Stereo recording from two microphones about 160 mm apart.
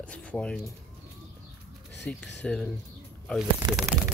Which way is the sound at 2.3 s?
5° left (ahead or behind).